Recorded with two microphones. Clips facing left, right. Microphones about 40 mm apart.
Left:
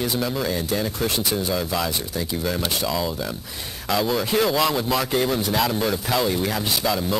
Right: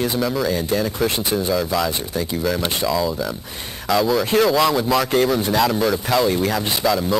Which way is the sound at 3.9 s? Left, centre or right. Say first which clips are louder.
Right 4 dB; centre.